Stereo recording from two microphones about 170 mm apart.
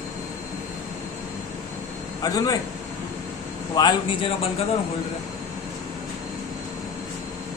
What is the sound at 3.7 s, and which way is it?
Speech, 30° left (ahead or behind).